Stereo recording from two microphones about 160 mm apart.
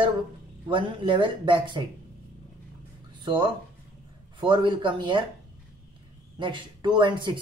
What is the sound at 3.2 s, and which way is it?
Speech, 30° right (ahead or behind).